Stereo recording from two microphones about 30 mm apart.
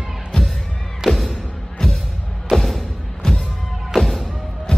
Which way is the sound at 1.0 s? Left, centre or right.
Centre.